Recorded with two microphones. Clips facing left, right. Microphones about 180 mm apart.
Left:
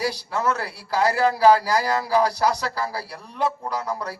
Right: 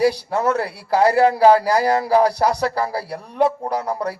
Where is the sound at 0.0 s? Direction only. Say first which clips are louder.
Right 7 dB; 60° right (ahead or behind).